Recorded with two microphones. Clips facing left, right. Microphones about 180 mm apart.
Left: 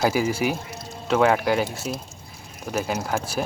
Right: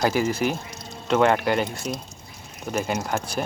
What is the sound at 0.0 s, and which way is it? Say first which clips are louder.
Speech: even; 5° left (ahead or behind).